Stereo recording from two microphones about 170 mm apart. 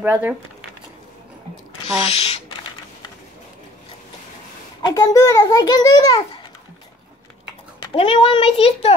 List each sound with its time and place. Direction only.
0.0 s speech: 10° right (ahead or behind)
2.0 s speech: 35° left (ahead or behind)
4.8 s a child's voice: 20° left (ahead or behind)
7.8 s a child's voice: 30° left (ahead or behind)